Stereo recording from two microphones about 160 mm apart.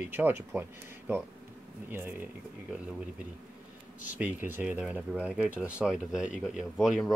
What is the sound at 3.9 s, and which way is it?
Speech, 10° right (ahead or behind).